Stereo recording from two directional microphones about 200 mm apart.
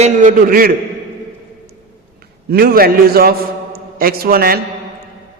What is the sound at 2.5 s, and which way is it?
A man's voice, 50° right (ahead or behind).